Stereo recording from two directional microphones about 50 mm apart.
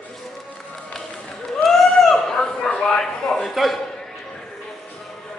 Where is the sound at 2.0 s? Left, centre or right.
Centre.